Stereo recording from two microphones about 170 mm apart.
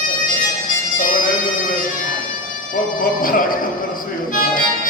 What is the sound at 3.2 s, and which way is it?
Music, 55° left (ahead or behind).